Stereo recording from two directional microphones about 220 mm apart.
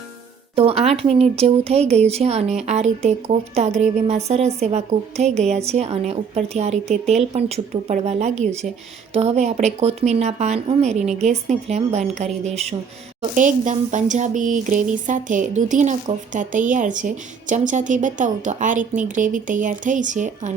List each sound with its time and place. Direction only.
0.5 s speech: 25° right (ahead or behind)